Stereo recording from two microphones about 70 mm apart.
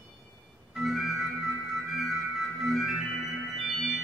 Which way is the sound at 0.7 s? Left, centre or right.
Centre.